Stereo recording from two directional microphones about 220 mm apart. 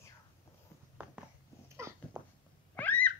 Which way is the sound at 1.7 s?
10° right (ahead or behind).